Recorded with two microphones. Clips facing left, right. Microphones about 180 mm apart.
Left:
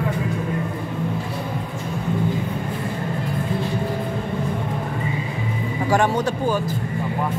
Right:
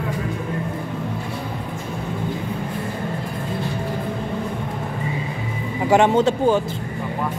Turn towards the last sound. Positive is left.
turn(degrees=-25)  # may be behind; listen again after turning